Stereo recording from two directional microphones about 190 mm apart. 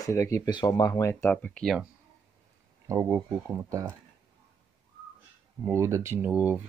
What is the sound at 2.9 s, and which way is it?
Speech, 15° right (ahead or behind).